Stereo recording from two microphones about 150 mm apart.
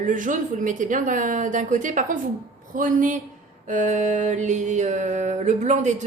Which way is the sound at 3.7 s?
55° right (ahead or behind).